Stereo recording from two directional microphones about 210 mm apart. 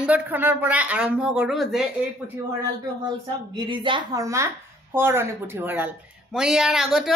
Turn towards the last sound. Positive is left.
turn(degrees=0)  # may be behind; listen again after turning